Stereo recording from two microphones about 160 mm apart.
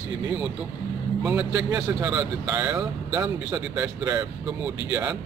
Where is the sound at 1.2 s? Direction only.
5° right (ahead or behind).